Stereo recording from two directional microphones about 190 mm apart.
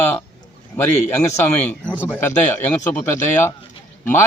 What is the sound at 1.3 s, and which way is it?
Speech, 10° left (ahead or behind).